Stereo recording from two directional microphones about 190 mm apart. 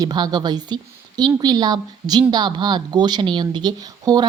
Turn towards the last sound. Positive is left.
turn(degrees=-20)  # may be behind; listen again after turning